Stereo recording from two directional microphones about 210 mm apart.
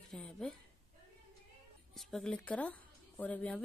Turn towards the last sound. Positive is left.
turn(degrees=5)  # may be behind; listen again after turning